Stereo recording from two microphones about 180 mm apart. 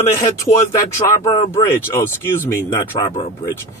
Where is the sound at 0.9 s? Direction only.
15° left (ahead or behind).